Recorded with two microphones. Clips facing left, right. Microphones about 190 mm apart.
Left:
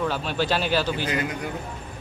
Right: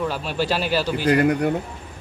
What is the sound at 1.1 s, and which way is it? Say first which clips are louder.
Speech: right 10 dB; 60° right (ahead or behind).